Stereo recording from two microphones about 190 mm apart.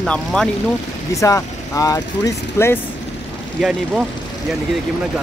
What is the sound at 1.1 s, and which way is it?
Speech, 15° left (ahead or behind).